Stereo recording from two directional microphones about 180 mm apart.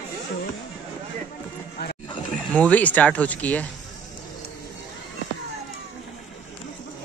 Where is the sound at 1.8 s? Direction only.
65° left (ahead or behind).